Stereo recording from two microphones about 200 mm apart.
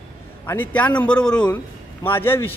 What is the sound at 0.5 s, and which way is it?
Speech, 10° left (ahead or behind).